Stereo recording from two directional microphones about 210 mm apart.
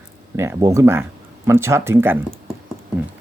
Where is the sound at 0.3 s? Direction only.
10° right (ahead or behind).